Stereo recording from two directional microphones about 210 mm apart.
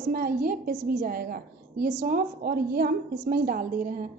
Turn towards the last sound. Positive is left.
turn(degrees=-40)  # may be behind; listen again after turning